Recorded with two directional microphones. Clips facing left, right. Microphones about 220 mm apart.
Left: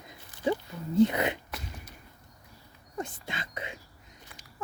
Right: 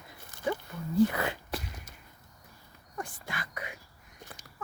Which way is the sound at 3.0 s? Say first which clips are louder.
Left 3 dB; 20° left (ahead or behind).